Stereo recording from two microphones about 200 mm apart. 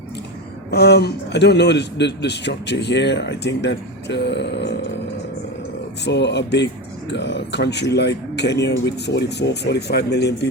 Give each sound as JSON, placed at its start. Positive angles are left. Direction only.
{"t": 0.7, "sound": "a man's voice", "side_deg": 55}
{"t": 6.1, "sound": "a man's voice", "side_deg": 60}